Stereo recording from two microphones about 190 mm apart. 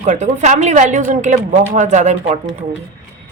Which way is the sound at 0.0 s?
40° right (ahead or behind).